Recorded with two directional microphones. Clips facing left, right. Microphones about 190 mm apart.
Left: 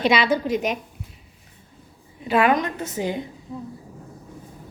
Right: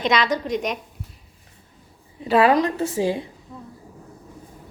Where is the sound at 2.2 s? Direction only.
30° right (ahead or behind).